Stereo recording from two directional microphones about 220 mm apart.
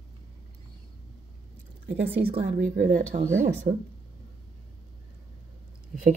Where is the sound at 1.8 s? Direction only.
50° right (ahead or behind).